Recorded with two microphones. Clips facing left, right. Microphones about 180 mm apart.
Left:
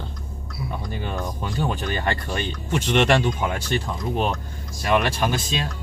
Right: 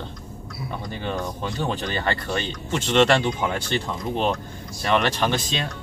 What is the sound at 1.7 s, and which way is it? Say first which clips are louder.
Speech: even; 15° left (ahead or behind).